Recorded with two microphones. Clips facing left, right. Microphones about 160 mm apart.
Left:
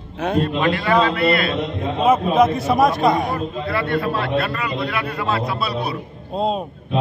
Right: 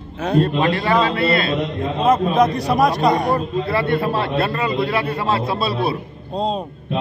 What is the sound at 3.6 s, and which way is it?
A man's voice, 25° right (ahead or behind).